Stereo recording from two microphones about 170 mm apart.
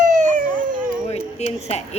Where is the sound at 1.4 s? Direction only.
40° left (ahead or behind).